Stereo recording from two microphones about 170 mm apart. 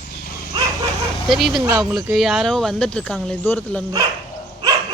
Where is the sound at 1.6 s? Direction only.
20° right (ahead or behind).